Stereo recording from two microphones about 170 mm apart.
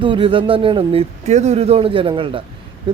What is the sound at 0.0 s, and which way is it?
Speech, 30° right (ahead or behind).